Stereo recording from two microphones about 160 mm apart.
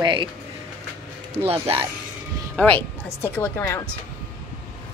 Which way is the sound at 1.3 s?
35° right (ahead or behind).